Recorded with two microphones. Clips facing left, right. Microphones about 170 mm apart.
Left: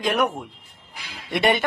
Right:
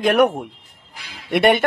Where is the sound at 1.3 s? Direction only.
60° right (ahead or behind).